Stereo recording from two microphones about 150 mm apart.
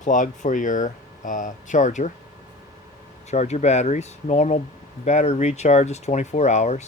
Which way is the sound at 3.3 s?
50° left (ahead or behind).